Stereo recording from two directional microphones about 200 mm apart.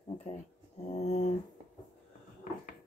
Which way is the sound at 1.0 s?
30° left (ahead or behind).